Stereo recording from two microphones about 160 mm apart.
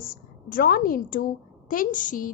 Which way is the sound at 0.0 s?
65° left (ahead or behind).